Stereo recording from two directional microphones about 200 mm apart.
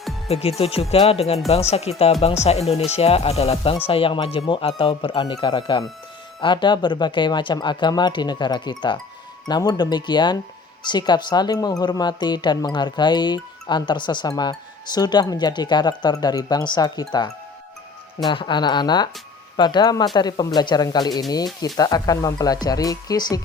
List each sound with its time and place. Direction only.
0.3 s speech: 30° left (ahead or behind)